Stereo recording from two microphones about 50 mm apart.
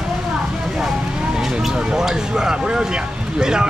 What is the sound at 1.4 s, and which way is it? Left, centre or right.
Speech, centre.